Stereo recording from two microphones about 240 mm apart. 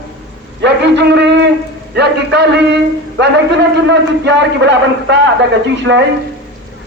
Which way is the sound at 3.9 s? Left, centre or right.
Right.